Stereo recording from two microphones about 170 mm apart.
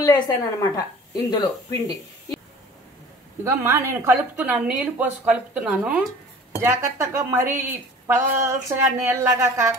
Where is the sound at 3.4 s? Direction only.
15° right (ahead or behind).